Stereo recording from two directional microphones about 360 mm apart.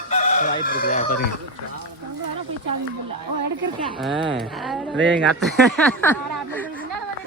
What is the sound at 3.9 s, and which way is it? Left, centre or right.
Speech, centre.